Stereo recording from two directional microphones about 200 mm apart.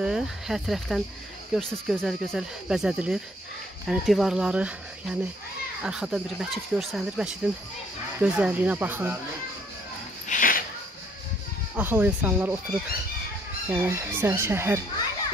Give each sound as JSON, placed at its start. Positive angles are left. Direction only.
{"t": 0.0, "sound": "speech", "side_deg": 0}
{"t": 10.2, "sound": "a sound", "side_deg": 40}
{"t": 11.7, "sound": "speech", "side_deg": -10}
{"t": 13.7, "sound": "speech", "side_deg": -15}